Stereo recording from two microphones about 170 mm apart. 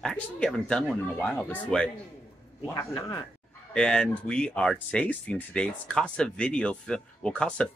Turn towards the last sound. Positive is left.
turn(degrees=5)  # may be behind; listen again after turning